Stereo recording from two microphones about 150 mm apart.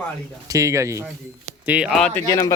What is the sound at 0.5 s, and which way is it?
Speech, 20° right (ahead or behind).